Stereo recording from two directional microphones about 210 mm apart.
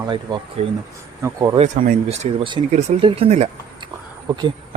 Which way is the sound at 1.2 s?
15° right (ahead or behind).